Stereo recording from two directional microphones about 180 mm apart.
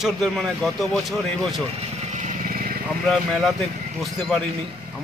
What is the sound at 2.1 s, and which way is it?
Vehicle, 55° right (ahead or behind).